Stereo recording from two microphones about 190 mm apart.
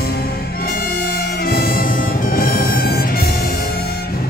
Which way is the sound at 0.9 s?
50° left (ahead or behind).